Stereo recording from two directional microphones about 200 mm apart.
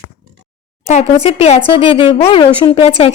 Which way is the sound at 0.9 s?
30° left (ahead or behind).